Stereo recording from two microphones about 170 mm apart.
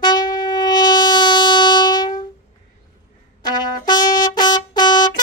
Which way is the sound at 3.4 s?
25° left (ahead or behind).